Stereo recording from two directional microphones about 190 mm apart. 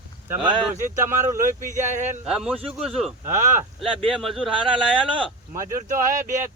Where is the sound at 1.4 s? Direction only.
40° right (ahead or behind).